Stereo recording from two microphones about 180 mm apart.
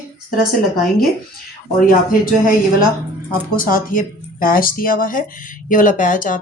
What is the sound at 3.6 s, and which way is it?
Speech, 50° left (ahead or behind).